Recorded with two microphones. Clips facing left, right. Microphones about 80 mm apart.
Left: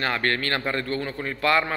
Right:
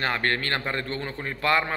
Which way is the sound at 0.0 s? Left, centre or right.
Right.